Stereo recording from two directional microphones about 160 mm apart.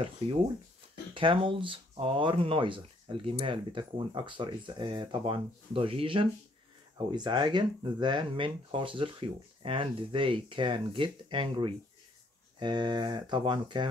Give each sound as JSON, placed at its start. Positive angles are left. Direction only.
{"t": 1.1, "sound": "speech", "side_deg": -30}